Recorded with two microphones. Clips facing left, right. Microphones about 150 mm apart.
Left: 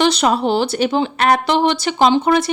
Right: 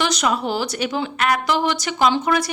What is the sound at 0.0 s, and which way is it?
Speech, 30° left (ahead or behind).